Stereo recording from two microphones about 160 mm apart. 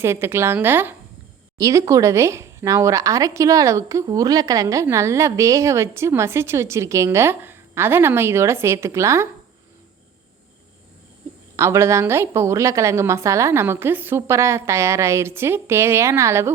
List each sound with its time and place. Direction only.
0.0 s a woman's voice: 15° right (ahead or behind)
11.5 s a woman's voice: 20° right (ahead or behind)